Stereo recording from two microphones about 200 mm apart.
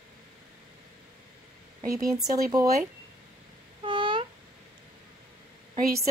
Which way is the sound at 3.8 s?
25° right (ahead or behind).